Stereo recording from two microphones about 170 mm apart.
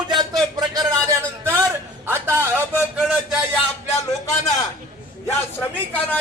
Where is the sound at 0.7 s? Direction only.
20° right (ahead or behind).